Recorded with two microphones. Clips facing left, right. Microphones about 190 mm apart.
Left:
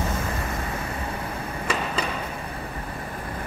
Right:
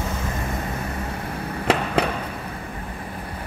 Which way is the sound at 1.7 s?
60° right (ahead or behind).